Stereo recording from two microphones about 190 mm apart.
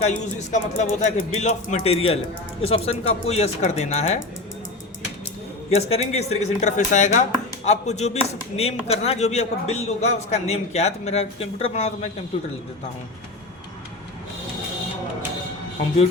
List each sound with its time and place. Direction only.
0.3 s speech: 40° left (ahead or behind)
5.7 s speech: 35° left (ahead or behind)